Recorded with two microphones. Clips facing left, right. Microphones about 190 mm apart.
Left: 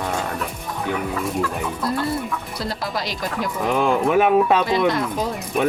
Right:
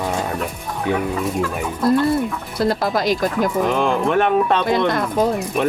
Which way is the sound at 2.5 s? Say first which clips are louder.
Right 11 dB; 50° right (ahead or behind).